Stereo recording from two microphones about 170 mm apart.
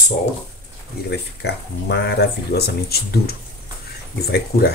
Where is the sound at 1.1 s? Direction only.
85° left.